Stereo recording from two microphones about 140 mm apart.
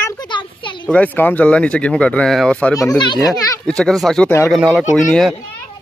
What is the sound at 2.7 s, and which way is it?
Speech, 30° left (ahead or behind).